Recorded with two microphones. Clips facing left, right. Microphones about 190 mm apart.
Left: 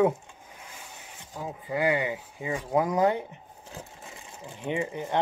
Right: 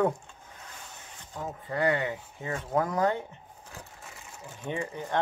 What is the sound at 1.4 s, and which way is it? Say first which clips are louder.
Speech: left 1 dB; 10° left (ahead or behind).